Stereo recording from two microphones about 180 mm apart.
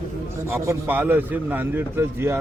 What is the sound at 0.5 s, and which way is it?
A man's voice, 15° right (ahead or behind).